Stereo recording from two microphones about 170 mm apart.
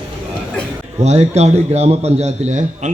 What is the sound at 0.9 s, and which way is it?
A man's voice, 40° right (ahead or behind).